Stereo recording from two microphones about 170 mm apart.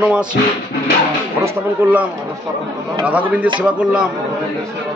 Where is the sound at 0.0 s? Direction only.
5° right (ahead or behind).